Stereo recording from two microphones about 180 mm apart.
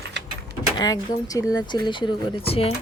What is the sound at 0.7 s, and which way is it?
Speech, 20° left (ahead or behind).